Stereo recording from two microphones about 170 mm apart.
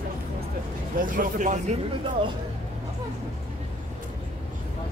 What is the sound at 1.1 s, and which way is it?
Speech, 45° right (ahead or behind).